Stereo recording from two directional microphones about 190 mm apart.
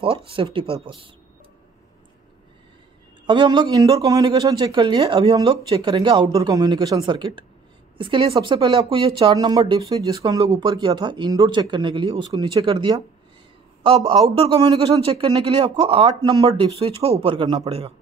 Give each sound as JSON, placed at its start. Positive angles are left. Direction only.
{"t": 0.0, "sound": "speech", "side_deg": -25}
{"t": 3.3, "sound": "speech", "side_deg": -25}